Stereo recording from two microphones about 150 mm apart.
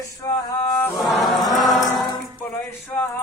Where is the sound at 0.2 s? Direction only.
20° left (ahead or behind).